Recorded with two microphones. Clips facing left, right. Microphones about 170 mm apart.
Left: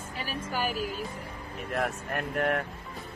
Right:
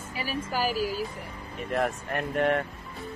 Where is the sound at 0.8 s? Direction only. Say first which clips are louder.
Right 4 dB; centre (ahead or behind).